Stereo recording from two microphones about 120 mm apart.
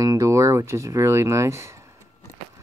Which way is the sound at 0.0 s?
30° right (ahead or behind).